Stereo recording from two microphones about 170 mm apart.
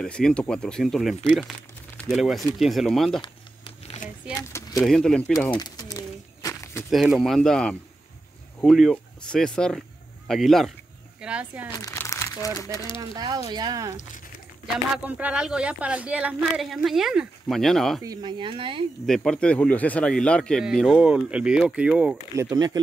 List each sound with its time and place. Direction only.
0.0 s speech: 5° left (ahead or behind)
3.2 s a sound: 35° left (ahead or behind)
4.4 s a sound: 20° left (ahead or behind)
4.8 s speech: 5° left (ahead or behind)
5.5 s speech: 25° left (ahead or behind)
5.9 s walk: 20° left (ahead or behind)
6.9 s speech: centre (ahead or behind)
11.8 s crumpling: 20° left (ahead or behind)
12.7 s speech: 25° left (ahead or behind)
13.1 s speech: 25° right (ahead or behind)
15.0 s speech: 10° right (ahead or behind)
18.0 s speech: 25° right (ahead or behind)
19.0 s speech: 5° left (ahead or behind)
22.3 s speech: 20° right (ahead or behind)